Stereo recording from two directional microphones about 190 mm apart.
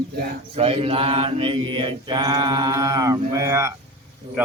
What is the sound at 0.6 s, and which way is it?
Mantra, 30° right (ahead or behind).